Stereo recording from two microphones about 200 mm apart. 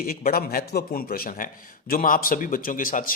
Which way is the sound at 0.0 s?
45° left (ahead or behind).